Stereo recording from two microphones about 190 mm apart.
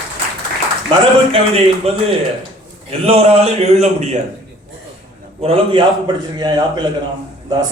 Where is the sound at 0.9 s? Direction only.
30° right (ahead or behind).